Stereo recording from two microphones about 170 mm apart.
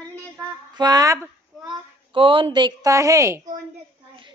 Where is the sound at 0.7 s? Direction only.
20° right (ahead or behind).